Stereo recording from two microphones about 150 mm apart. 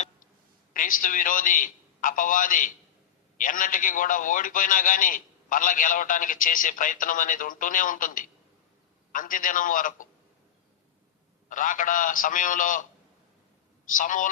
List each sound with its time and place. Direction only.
0.7 s a man's voice: 65° left (ahead or behind)
11.4 s a man's voice: 60° left (ahead or behind)
13.8 s a man's voice: 60° left (ahead or behind)